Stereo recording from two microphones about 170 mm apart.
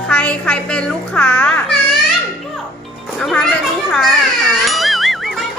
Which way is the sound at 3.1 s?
Centre (ahead or behind).